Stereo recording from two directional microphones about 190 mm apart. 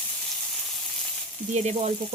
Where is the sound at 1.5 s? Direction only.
35° right (ahead or behind).